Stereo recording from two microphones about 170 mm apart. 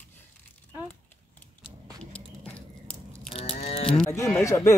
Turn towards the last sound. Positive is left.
turn(degrees=15)  # may be behind; listen again after turning